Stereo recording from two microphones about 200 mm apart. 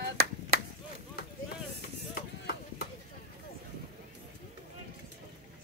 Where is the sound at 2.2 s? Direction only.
50° left (ahead or behind).